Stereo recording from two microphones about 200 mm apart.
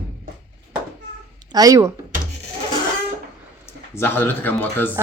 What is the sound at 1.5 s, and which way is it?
Speech, 15° right (ahead or behind).